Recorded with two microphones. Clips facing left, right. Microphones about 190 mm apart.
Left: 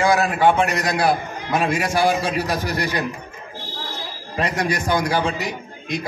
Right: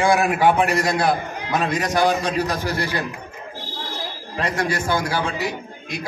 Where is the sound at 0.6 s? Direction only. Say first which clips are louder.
Right 2 dB; 30° right (ahead or behind).